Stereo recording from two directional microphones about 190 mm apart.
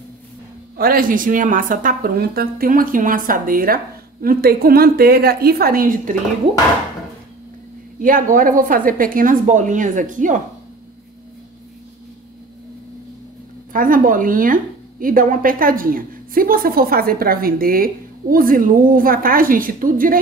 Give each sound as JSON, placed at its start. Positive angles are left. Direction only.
{"t": 0.7, "sound": "speech", "side_deg": -50}
{"t": 8.0, "sound": "speech", "side_deg": -45}
{"t": 13.7, "sound": "speech", "side_deg": -45}